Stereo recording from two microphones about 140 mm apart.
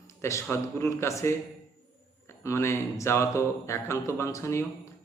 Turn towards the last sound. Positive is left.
turn(degrees=20)  # may be behind; listen again after turning